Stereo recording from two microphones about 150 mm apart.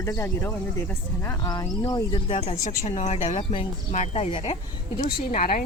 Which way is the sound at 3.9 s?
50° left (ahead or behind).